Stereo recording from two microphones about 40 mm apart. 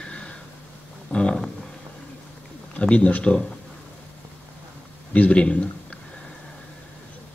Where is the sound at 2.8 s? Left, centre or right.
Left.